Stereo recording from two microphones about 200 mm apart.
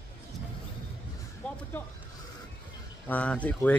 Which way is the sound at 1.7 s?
10° left (ahead or behind).